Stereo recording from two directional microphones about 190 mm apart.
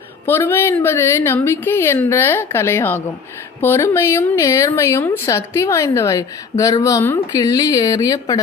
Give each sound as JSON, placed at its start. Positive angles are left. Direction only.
{"t": 0.3, "sound": "a woman's voice", "side_deg": 10}